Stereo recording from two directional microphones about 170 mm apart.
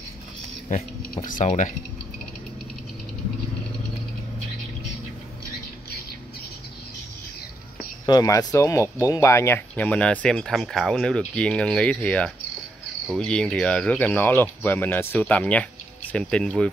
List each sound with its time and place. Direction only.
0.7 s speech: 50° left (ahead or behind)
8.1 s speech: 20° left (ahead or behind); by 16.6 s 5° left (ahead or behind)